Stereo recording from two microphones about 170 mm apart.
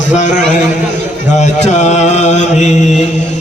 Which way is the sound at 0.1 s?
45° left (ahead or behind).